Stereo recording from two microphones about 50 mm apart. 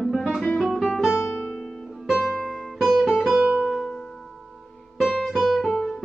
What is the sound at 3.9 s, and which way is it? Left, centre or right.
Music, centre.